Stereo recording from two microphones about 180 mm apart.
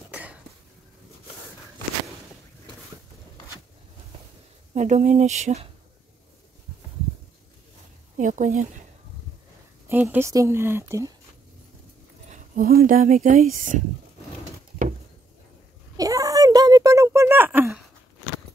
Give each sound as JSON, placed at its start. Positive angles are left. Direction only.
{"t": 0.1, "sound": "a sound", "side_deg": -10}
{"t": 4.7, "sound": "speech", "side_deg": -40}
{"t": 8.2, "sound": "a woman's voice", "side_deg": -45}
{"t": 9.8, "sound": "speech", "side_deg": -10}
{"t": 12.3, "sound": "speech", "side_deg": -55}
{"t": 16.0, "sound": "a sound", "side_deg": -20}